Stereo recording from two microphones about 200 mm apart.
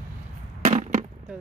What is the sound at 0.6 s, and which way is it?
Fireworks, 40° right (ahead or behind).